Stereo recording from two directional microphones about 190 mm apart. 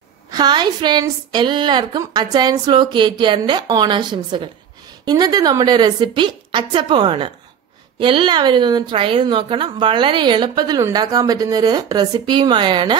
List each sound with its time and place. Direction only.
0.3 s a woman's voice: 20° right (ahead or behind)